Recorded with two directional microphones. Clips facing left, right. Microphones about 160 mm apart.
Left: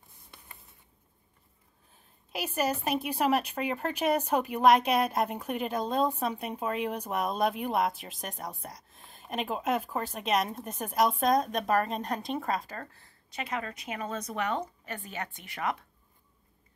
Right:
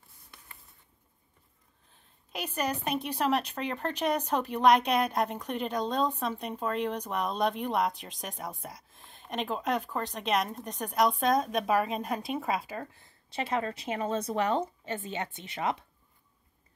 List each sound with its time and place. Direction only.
2.3 s a woman's voice: 5° left (ahead or behind); by 13.1 s 15° right (ahead or behind)
13.3 s a woman's voice: 30° right (ahead or behind)